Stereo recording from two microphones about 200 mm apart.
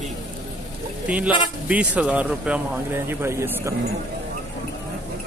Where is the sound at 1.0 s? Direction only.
5° right (ahead or behind).